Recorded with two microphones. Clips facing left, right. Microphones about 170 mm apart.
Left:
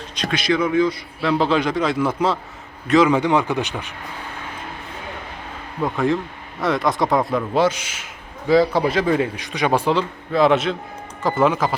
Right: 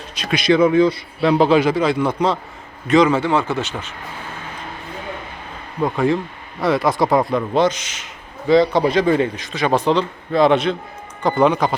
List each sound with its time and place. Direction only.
0.2 s speech: 10° right (ahead or behind)
0.4 s a man's voice: 30° right (ahead or behind)
1.3 s speech: 15° right (ahead or behind)
3.1 s speech: 15° left (ahead or behind)
5.8 s speech: centre (ahead or behind)